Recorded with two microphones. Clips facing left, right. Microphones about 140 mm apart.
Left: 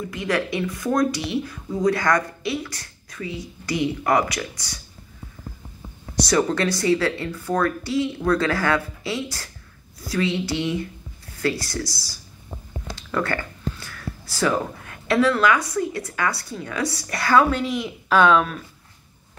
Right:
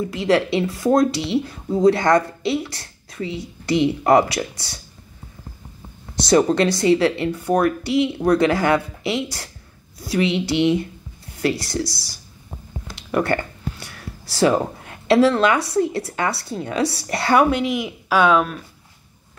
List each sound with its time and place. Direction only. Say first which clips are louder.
0.1 s speech: right 6 dB; 25° right (ahead or behind)
6.1 s speech: right 5 dB; 25° right (ahead or behind)
12.9 s a sound: right 5 dB; 20° right (ahead or behind)
14.3 s speech: right 5 dB; 25° right (ahead or behind); by 18.6 s 5° right (ahead or behind)